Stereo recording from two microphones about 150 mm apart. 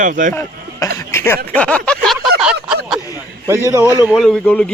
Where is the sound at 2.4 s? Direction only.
5° right (ahead or behind).